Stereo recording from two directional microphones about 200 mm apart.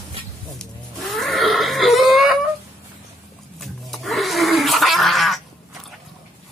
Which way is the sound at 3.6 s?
Centre (ahead or behind).